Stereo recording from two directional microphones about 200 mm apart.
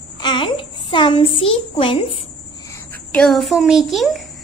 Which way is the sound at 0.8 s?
25° left (ahead or behind).